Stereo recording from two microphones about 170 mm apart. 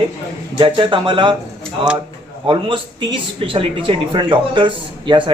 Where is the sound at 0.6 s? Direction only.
30° right (ahead or behind).